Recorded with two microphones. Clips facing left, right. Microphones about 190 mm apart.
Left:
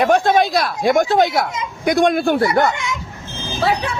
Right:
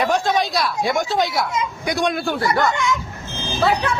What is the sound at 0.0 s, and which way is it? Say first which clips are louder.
A man's voice: left 5 dB; 55° left (ahead or behind).